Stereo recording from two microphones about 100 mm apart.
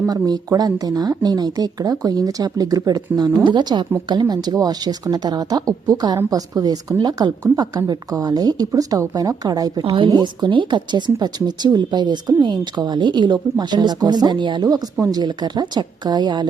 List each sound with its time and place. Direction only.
0.1 s speech: 40° right (ahead or behind)
9.8 s a woman's voice: 60° right (ahead or behind)
10.1 s speech: 45° right (ahead or behind)